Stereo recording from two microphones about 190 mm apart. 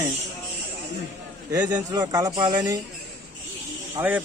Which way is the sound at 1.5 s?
20° right (ahead or behind).